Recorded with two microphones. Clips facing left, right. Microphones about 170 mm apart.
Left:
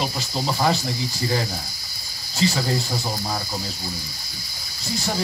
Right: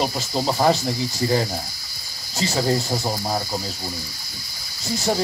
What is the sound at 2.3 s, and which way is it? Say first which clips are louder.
Speech: left 1 dB; 40° right (ahead or behind).